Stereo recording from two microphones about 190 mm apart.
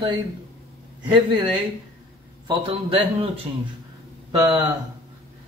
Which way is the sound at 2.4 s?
30° right (ahead or behind).